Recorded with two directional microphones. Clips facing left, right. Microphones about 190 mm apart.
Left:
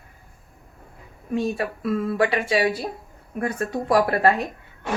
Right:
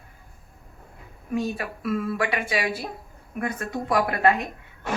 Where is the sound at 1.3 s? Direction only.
30° left (ahead or behind).